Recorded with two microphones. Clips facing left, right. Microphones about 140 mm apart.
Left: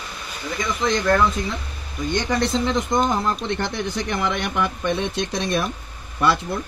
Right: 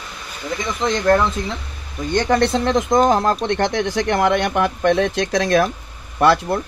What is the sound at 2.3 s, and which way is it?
Speech, 65° right (ahead or behind).